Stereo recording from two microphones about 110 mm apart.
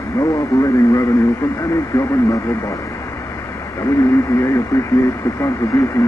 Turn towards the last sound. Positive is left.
turn(degrees=30)  # may be behind; listen again after turning